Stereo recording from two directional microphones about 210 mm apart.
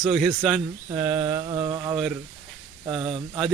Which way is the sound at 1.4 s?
30° right (ahead or behind).